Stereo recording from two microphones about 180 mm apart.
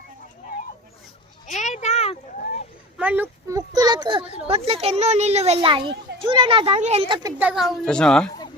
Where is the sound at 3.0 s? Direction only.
10° right (ahead or behind).